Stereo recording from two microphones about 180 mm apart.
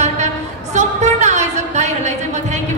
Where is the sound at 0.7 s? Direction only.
40° right (ahead or behind).